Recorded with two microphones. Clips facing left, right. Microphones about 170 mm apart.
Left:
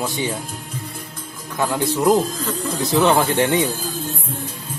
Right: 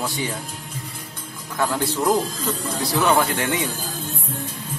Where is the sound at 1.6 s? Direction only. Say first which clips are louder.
Left 3 dB; 15° left (ahead or behind).